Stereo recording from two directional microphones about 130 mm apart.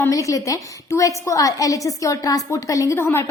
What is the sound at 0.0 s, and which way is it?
A woman's voice, 25° left (ahead or behind).